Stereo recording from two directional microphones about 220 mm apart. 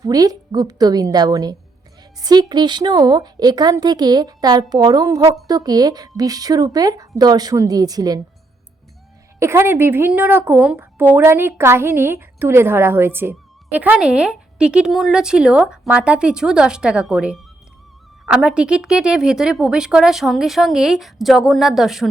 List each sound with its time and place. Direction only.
0.0 s a woman's voice: 15° right (ahead or behind)
9.4 s a woman's voice: 10° right (ahead or behind)